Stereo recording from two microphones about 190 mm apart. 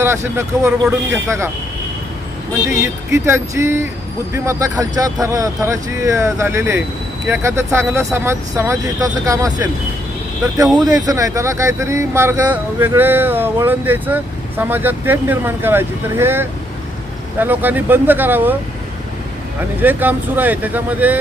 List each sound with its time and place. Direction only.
0.0 s speech: 15° right (ahead or behind)
2.6 s speech: 15° right (ahead or behind)
10.8 s speech: 20° right (ahead or behind)
19.8 s speech: 10° right (ahead or behind)